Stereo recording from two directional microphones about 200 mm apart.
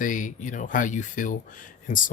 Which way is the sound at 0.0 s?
40° left (ahead or behind).